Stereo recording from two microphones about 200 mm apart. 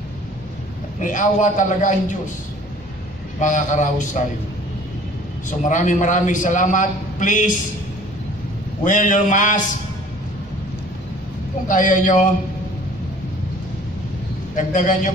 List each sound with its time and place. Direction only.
1.0 s a man's voice: 40° left (ahead or behind)
3.3 s a man's voice: 40° left (ahead or behind)
5.7 s a man's voice: 40° left (ahead or behind)
8.8 s a man's voice: 40° left (ahead or behind)
11.6 s a man's voice: 40° left (ahead or behind)
14.5 s a man's voice: 40° left (ahead or behind)